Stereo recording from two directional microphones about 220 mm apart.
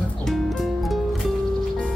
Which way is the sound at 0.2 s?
Centre (ahead or behind).